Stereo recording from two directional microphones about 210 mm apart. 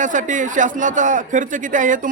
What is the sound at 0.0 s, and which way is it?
A man's voice, 35° right (ahead or behind).